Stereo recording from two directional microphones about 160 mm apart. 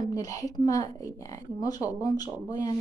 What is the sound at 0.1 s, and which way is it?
A woman's voice, 20° left (ahead or behind).